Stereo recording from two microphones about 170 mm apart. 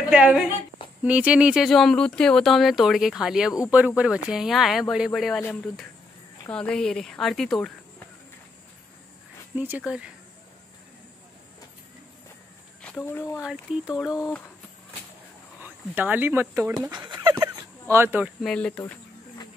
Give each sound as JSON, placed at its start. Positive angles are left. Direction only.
{"t": 0.1, "sound": "speech", "side_deg": -5}
{"t": 9.6, "sound": "speech", "side_deg": -10}
{"t": 12.8, "sound": "speech", "side_deg": 10}
{"t": 13.5, "sound": "speech", "side_deg": 0}
{"t": 15.6, "sound": "speech", "side_deg": -10}
{"t": 16.9, "sound": "dog", "side_deg": -25}
{"t": 18.4, "sound": "speech", "side_deg": 5}